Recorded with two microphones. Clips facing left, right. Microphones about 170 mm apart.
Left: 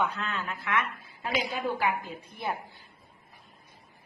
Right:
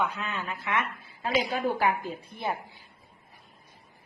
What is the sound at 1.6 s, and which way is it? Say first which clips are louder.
Speech: right 3 dB; 40° right (ahead or behind).